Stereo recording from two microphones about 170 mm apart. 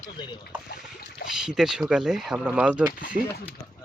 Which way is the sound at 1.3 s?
5° right (ahead or behind).